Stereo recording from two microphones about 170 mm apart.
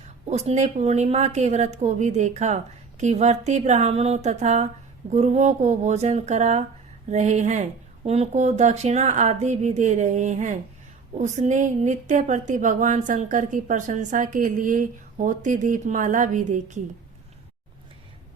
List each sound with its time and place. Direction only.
0.3 s speech: 40° right (ahead or behind)